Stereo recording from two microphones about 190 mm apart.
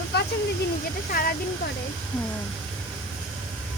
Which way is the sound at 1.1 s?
50° left (ahead or behind).